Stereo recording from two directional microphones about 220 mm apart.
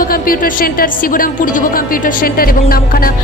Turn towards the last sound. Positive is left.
turn(degrees=40)  # may be behind; listen again after turning